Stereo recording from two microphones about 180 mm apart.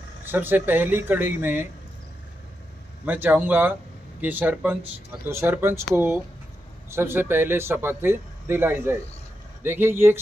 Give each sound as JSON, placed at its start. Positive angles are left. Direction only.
{"t": 0.2, "sound": "a man's voice", "side_deg": -10}
{"t": 3.1, "sound": "a man's voice", "side_deg": -10}